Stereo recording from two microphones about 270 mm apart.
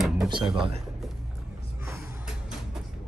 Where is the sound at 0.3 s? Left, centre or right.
Centre.